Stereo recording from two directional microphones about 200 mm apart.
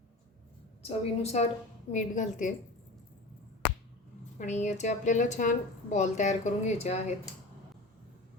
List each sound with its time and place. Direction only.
0.8 s a woman's voice: 30° left (ahead or behind)
4.4 s a woman's voice: 35° left (ahead or behind)